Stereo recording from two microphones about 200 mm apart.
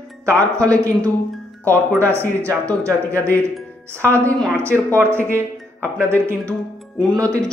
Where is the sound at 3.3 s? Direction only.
10° left (ahead or behind).